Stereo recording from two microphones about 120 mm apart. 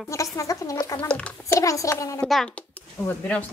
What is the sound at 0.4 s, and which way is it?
Speech, 30° left (ahead or behind).